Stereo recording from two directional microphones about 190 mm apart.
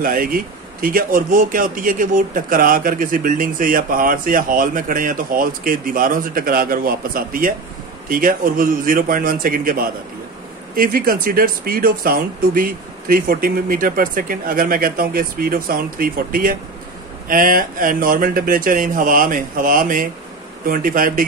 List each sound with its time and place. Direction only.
0.0 s speech: 50° right (ahead or behind)